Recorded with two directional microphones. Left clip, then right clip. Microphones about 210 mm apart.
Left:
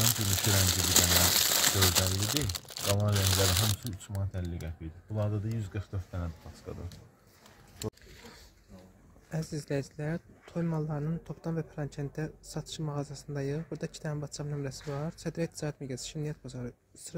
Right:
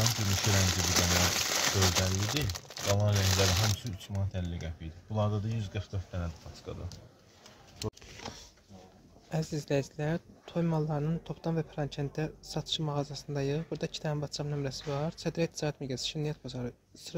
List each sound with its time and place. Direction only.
0.4 s speech: 15° left (ahead or behind)
3.7 s speech: 35° left (ahead or behind)
9.3 s speech: centre (ahead or behind)